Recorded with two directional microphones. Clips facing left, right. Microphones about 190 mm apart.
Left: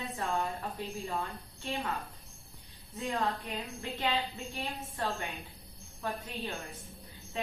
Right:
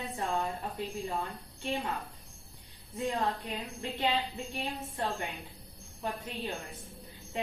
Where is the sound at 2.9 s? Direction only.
15° right (ahead or behind).